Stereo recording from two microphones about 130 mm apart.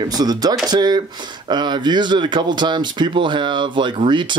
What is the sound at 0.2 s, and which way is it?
Speech, 30° right (ahead or behind).